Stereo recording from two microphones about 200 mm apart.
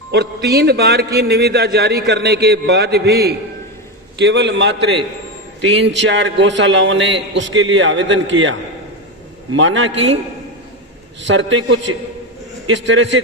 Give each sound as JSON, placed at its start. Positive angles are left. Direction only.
{"t": 0.1, "sound": "a man's voice", "side_deg": -55}
{"t": 11.3, "sound": "a man's voice", "side_deg": -70}